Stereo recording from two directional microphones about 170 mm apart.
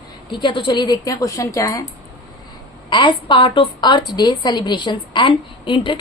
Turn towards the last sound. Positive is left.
turn(degrees=30)  # may be behind; listen again after turning